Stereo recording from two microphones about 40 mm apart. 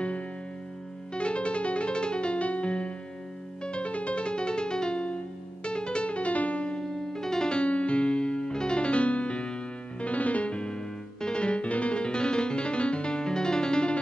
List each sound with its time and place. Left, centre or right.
1.1 s music: left
6.8 s music: centre